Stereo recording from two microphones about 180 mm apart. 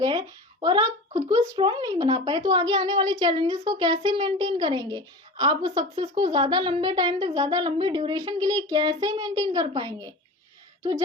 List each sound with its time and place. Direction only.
0.0 s speech: 25° right (ahead or behind)